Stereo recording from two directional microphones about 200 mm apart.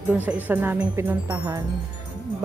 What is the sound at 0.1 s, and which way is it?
Speech, 10° right (ahead or behind).